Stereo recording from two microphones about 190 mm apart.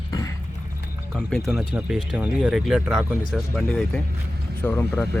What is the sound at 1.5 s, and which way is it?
Speech, 5° right (ahead or behind).